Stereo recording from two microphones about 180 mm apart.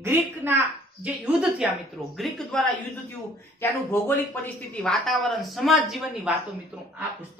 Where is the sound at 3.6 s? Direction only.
15° left (ahead or behind); by 6.4 s centre (ahead or behind).